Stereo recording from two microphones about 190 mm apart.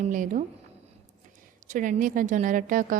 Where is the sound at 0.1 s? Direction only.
45° right (ahead or behind).